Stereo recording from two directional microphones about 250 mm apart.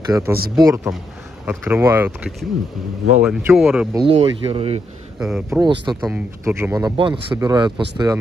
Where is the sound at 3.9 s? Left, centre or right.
Right.